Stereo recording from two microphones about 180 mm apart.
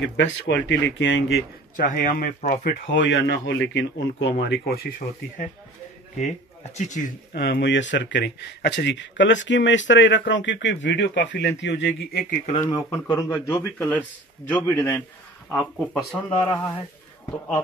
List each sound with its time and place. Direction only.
0.0 s speech: 80° left
1.8 s a man's voice: 50° left (ahead or behind)
2.9 s speech: 75° left (ahead or behind); by 5.5 s 55° left (ahead or behind)
6.7 s speech: 40° left (ahead or behind)
7.3 s speech: 65° left (ahead or behind)
12.6 s speech: 15° left (ahead or behind)
15.5 s speech: centre (ahead or behind)
16.3 s speech: 10° left (ahead or behind)